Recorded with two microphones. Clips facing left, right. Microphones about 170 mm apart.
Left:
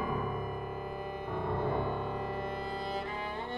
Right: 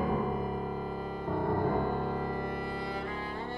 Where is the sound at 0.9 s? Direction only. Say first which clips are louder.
Right 4 dB; 20° left (ahead or behind).